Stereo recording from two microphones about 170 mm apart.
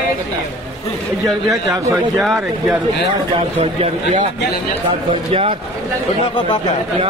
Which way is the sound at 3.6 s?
40° right (ahead or behind).